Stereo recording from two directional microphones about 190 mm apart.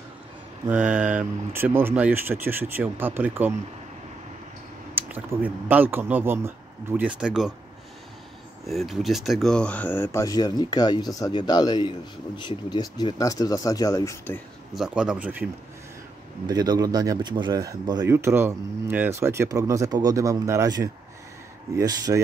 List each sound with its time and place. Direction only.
0.7 s speech: 5° right (ahead or behind)
4.9 s speech: 10° right (ahead or behind)
8.6 s speech: centre (ahead or behind)
14.8 s speech: 5° right (ahead or behind)
16.4 s speech: 20° right (ahead or behind)